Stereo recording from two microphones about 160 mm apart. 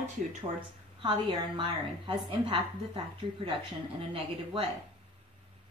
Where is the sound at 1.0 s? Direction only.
30° right (ahead or behind).